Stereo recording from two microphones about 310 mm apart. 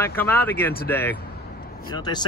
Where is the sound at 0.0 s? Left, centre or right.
Centre.